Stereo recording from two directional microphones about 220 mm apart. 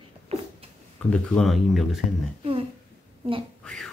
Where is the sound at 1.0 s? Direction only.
5° left (ahead or behind).